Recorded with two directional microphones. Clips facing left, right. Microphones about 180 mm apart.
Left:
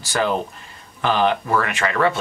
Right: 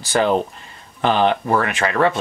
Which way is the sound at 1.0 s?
25° right (ahead or behind).